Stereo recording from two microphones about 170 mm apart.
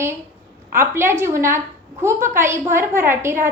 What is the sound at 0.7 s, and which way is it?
A woman's voice, 15° right (ahead or behind).